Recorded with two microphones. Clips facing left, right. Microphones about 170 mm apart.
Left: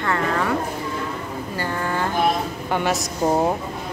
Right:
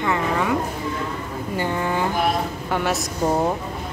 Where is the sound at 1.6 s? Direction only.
15° right (ahead or behind).